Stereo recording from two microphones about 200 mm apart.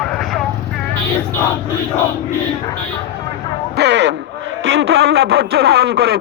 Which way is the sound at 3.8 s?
60° right (ahead or behind).